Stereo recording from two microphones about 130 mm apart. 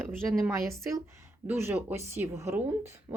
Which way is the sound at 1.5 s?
20° right (ahead or behind).